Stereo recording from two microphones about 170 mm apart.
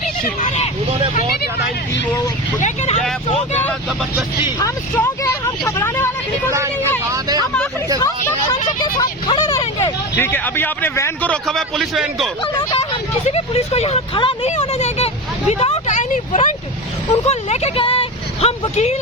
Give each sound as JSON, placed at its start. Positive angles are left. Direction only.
{"t": 0.4, "sound": "speech", "side_deg": 40}
{"t": 2.6, "sound": "speech", "side_deg": 45}
{"t": 3.6, "sound": "a man's voice", "side_deg": 10}
{"t": 7.1, "sound": "speech", "side_deg": -25}
{"t": 8.8, "sound": "speech", "side_deg": 25}
{"t": 10.2, "sound": "a man's voice", "side_deg": 10}
{"t": 12.4, "sound": "speech", "side_deg": 30}